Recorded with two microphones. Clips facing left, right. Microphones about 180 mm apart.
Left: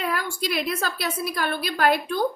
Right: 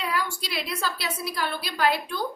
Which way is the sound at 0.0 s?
50° left (ahead or behind).